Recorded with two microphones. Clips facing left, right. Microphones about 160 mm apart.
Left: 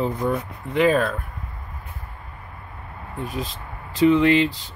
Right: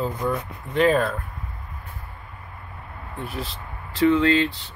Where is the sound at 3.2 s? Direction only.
15° left (ahead or behind).